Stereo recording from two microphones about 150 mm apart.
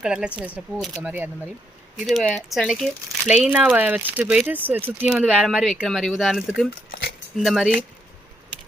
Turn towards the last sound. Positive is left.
turn(degrees=0)  # may be behind; listen again after turning